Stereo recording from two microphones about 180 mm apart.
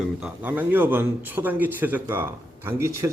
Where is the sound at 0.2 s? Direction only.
10° right (ahead or behind).